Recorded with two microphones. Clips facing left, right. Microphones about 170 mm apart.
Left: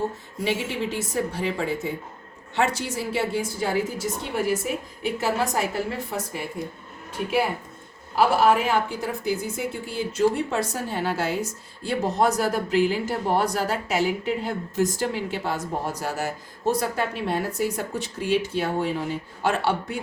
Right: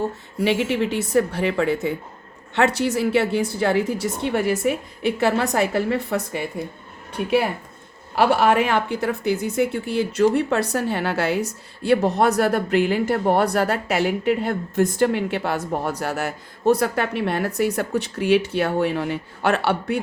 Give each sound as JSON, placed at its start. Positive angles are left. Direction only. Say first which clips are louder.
{"t": 0.4, "sound": "a woman's voice", "louder": "right 6 dB", "side_deg": -65}
{"t": 7.2, "sound": "a woman's voice", "louder": "right 3 dB", "side_deg": -55}
{"t": 8.1, "sound": "a woman's voice", "louder": "right 2 dB", "side_deg": -70}